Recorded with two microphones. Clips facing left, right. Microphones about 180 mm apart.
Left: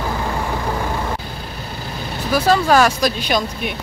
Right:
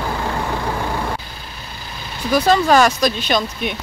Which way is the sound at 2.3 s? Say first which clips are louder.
Right 1 dB; 5° left (ahead or behind).